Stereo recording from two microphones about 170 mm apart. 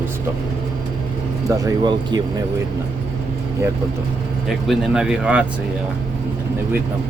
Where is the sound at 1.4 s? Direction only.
25° right (ahead or behind).